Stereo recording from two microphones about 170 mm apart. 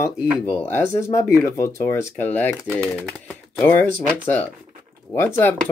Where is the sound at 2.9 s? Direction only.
5° left (ahead or behind).